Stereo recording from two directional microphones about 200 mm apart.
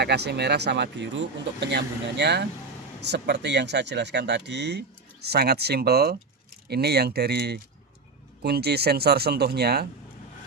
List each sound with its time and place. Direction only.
0.0 s speech: 55° right (ahead or behind)